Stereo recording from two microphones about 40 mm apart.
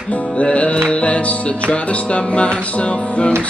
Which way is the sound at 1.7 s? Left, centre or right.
Left.